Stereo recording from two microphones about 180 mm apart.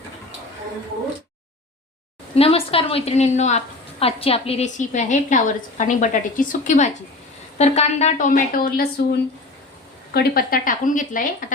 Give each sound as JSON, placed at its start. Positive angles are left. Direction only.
{"t": 2.3, "sound": "a woman's voice", "side_deg": 35}
{"t": 10.2, "sound": "a woman's voice", "side_deg": 55}